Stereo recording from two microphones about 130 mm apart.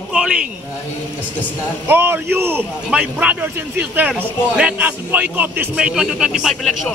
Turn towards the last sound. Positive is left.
turn(degrees=0)  # may be behind; listen again after turning